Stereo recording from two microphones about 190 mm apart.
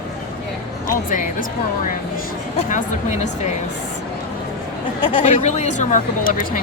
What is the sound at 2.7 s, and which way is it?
Speech, 40° left (ahead or behind).